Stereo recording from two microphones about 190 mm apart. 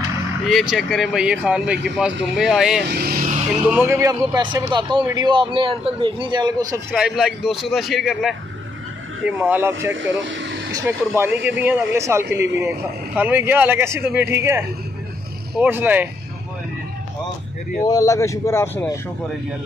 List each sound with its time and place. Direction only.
0.5 s speech: centre (ahead or behind)
2.9 s speech: 55° right (ahead or behind)
3.6 s a man's voice: 10° right (ahead or behind)
6.9 s speech: centre (ahead or behind)
9.8 s speech: 80° right
10.7 s speech: 10° right (ahead or behind)
15.6 s speech: 10° right (ahead or behind)
17.8 s speech: 15° left (ahead or behind)